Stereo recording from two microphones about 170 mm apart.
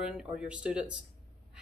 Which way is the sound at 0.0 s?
5° right (ahead or behind).